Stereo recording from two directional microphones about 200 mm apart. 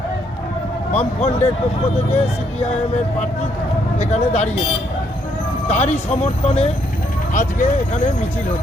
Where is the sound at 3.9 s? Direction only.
35° left (ahead or behind).